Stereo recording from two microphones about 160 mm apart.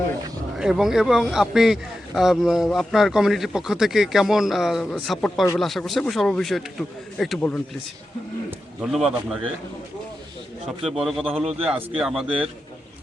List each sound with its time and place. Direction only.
0.5 s a man's voice: 5° right (ahead or behind)
10.9 s a man's voice: centre (ahead or behind)
11.3 s a man's voice: 40° right (ahead or behind)
11.7 s a man's voice: 5° right (ahead or behind)